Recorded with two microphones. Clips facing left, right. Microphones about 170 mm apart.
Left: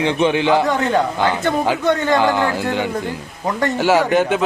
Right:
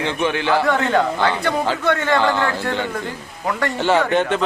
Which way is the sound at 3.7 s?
5° left (ahead or behind).